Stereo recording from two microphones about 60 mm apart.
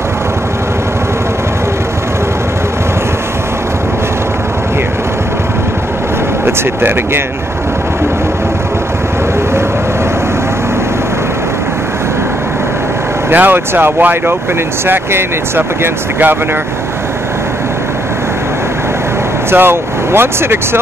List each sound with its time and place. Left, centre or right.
13.3 s speech: right
19.5 s speech: right